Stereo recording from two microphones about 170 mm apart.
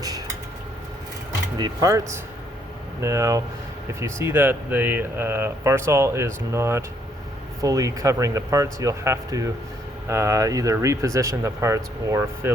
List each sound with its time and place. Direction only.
1.5 s speech: 20° right (ahead or behind)